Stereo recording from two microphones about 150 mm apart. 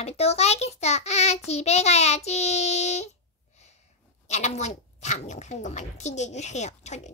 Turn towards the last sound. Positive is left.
turn(degrees=50)  # may be behind; listen again after turning